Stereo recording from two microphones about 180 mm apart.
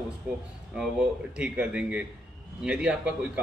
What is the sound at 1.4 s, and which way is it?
A man's voice, 10° right (ahead or behind).